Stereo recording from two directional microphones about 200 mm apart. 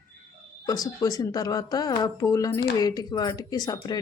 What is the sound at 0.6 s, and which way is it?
Speech, 20° left (ahead or behind).